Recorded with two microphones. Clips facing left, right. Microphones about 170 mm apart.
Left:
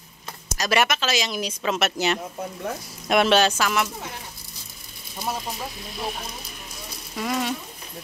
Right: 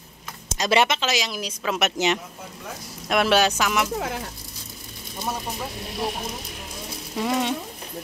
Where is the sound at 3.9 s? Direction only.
90° right.